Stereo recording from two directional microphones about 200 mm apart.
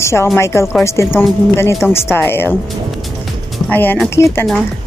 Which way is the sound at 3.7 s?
10° left (ahead or behind).